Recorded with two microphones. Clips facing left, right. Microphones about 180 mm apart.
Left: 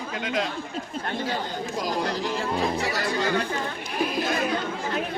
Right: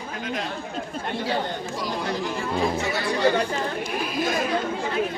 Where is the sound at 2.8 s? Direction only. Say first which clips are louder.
Right 1 dB; 40° left (ahead or behind).